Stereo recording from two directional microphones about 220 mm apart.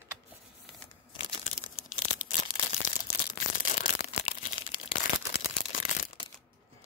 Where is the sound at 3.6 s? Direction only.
40° left (ahead or behind).